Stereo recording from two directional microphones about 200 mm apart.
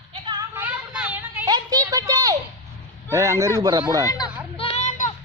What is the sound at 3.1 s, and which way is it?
Speech, 15° right (ahead or behind).